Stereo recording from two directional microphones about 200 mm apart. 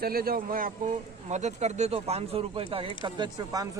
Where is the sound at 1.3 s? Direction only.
35° right (ahead or behind).